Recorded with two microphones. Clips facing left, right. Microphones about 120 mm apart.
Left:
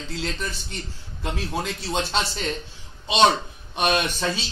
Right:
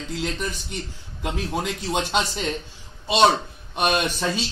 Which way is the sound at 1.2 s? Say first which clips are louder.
Right 1 dB; 15° right (ahead or behind).